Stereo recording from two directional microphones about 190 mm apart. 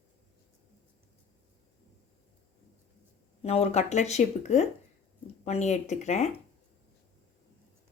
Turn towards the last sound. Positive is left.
turn(degrees=35)  # may be behind; listen again after turning